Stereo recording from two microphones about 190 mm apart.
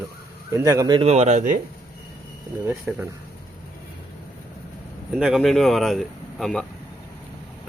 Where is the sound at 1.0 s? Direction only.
35° right (ahead or behind).